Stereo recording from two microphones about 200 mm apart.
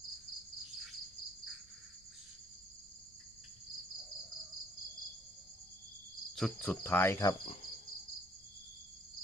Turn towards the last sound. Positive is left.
turn(degrees=15)  # may be behind; listen again after turning